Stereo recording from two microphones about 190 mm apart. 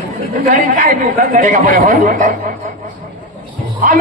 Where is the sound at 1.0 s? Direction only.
50° right (ahead or behind).